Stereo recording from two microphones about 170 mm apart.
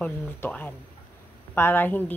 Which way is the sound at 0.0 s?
10° left (ahead or behind).